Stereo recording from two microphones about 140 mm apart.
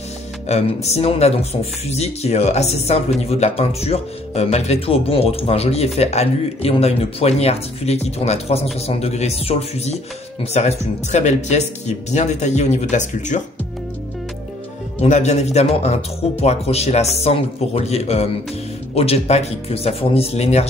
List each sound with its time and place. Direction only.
0.5 s speech: 50° left (ahead or behind)
15.0 s speech: 55° left (ahead or behind)